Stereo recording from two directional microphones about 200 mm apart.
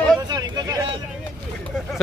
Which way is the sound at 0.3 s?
20° right (ahead or behind).